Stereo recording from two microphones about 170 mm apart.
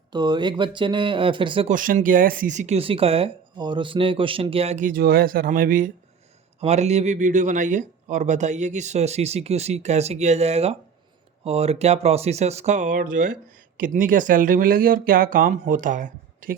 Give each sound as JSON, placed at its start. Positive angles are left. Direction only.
{"t": 0.1, "sound": "speech", "side_deg": -25}
{"t": 1.7, "sound": "speech", "side_deg": -50}
{"t": 6.6, "sound": "speech", "side_deg": -40}